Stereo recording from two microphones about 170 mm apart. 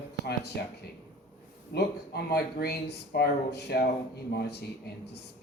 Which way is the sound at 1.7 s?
70° left (ahead or behind).